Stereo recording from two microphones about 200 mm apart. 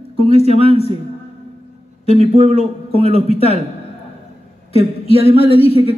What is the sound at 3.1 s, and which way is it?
Speech, 30° left (ahead or behind).